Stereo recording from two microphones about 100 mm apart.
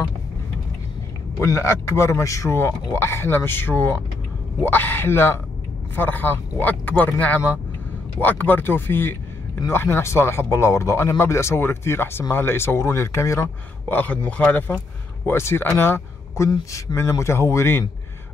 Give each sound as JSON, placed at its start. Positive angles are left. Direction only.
{"t": 1.4, "sound": "speech", "side_deg": 25}
{"t": 13.8, "sound": "speech", "side_deg": 15}
{"t": 15.2, "sound": "speech", "side_deg": 25}